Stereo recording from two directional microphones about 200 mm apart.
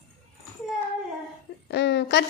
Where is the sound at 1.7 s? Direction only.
60° left (ahead or behind).